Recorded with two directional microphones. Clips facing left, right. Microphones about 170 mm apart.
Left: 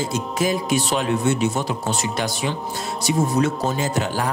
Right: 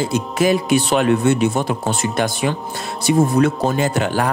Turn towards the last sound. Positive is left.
turn(degrees=-65)  # may be behind; listen again after turning